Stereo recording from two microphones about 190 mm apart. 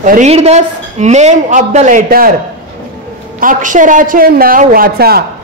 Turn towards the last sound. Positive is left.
turn(degrees=-55)  # may be behind; listen again after turning